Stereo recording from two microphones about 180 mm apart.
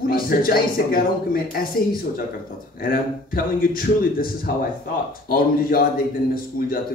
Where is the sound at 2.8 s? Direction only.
50° left (ahead or behind).